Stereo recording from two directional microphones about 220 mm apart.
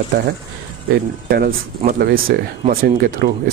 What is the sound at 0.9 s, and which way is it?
Speech, 45° right (ahead or behind).